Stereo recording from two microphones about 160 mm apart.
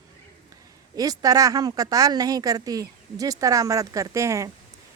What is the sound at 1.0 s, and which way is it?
Speech, 25° right (ahead or behind).